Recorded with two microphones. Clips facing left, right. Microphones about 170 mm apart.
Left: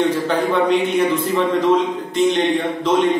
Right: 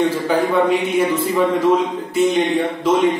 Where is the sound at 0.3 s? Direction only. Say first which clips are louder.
Right 3 dB; 5° right (ahead or behind).